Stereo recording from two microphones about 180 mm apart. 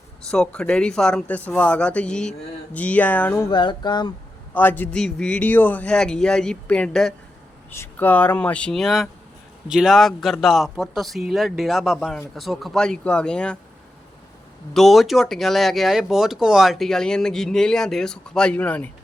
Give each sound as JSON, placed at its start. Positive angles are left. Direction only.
{"t": 0.3, "sound": "speech", "side_deg": 5}
{"t": 3.5, "sound": "speech", "side_deg": 25}
{"t": 4.5, "sound": "speech", "side_deg": 10}
{"t": 14.7, "sound": "speech", "side_deg": 0}